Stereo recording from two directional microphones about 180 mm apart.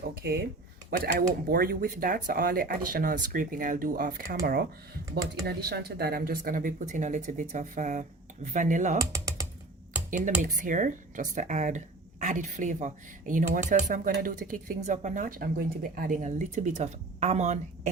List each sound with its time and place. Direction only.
0.2 s speech: 60° right (ahead or behind)
5.1 s speech: 60° right (ahead or behind); by 9.0 s 45° right (ahead or behind)
10.1 s speech: 45° right (ahead or behind)